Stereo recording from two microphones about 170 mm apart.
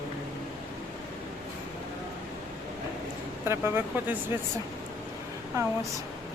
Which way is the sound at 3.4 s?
15° right (ahead or behind).